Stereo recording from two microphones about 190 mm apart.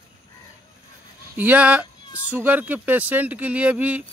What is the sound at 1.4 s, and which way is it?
Speech, 10° right (ahead or behind).